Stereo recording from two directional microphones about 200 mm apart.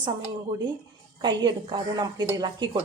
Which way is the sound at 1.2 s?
20° right (ahead or behind).